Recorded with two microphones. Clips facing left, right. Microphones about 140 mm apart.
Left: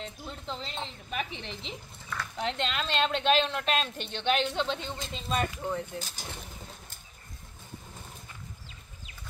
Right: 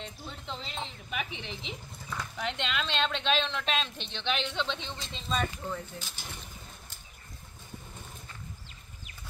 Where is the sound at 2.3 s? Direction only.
35° left (ahead or behind).